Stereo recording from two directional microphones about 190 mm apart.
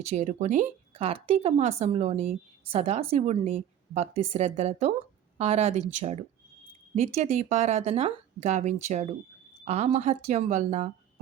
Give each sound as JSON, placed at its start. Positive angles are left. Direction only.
{"t": 0.0, "sound": "speech", "side_deg": -35}